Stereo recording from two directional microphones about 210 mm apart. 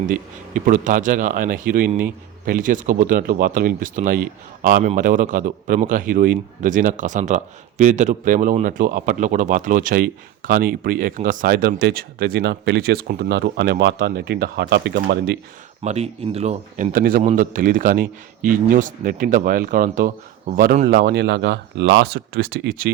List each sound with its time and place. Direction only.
0.1 s speech: 40° right (ahead or behind)
15.8 s speech: 30° right (ahead or behind); by 22.9 s 45° right (ahead or behind)